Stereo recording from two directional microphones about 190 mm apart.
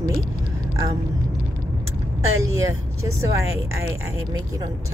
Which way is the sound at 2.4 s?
15° right (ahead or behind).